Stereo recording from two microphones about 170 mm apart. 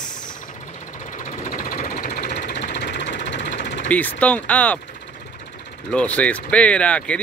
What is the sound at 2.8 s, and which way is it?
Vehicle, 90° left.